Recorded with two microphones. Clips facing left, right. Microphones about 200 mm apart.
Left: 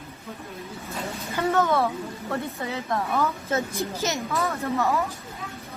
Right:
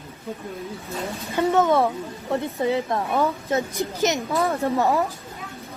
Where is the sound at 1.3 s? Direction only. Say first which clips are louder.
Right 4 dB; 25° right (ahead or behind).